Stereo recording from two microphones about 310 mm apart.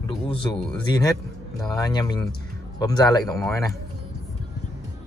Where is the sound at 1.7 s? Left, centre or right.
Centre.